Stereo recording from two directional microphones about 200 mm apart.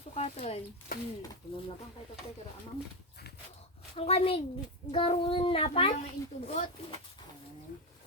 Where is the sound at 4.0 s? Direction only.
30° left (ahead or behind).